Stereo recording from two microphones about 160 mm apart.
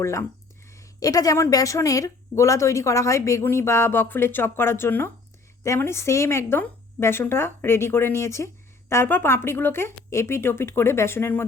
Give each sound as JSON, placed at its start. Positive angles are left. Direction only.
{"t": 0.0, "sound": "a woman's voice", "side_deg": 15}